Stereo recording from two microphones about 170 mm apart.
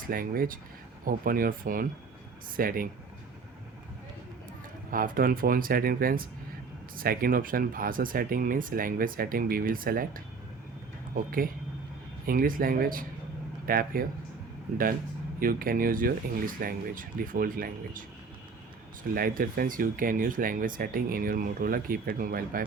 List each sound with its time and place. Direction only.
0.1 s speech: 55° right (ahead or behind)
4.9 s speech: 55° right (ahead or behind)
15.4 s speech: 55° right (ahead or behind)
19.1 s speech: 60° right (ahead or behind)